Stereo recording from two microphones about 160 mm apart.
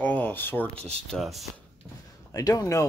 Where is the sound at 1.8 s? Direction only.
Centre (ahead or behind).